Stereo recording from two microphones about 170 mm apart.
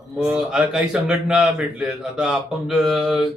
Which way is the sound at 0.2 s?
5° right (ahead or behind).